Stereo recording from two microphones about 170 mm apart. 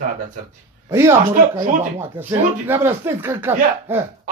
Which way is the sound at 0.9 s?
15° right (ahead or behind).